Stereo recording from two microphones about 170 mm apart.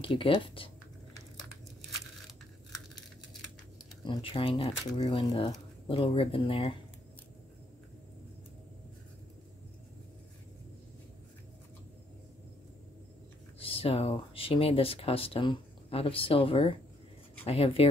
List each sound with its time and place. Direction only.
0.0 s speech: 30° left (ahead or behind)
4.0 s speech: 30° left (ahead or behind)
13.6 s speech: 35° left (ahead or behind)